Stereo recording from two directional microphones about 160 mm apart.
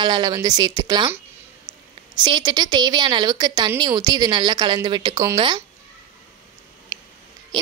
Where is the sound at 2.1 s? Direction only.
30° right (ahead or behind).